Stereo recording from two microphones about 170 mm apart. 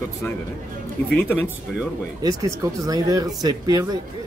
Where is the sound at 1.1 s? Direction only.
10° left (ahead or behind).